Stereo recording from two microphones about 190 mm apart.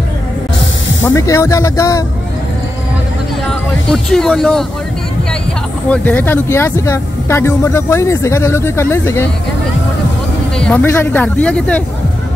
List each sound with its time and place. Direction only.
1.0 s speech: 15° left (ahead or behind)
3.9 s speech: centre (ahead or behind)
5.9 s speech: 10° left (ahead or behind)
10.6 s speech: 10° left (ahead or behind)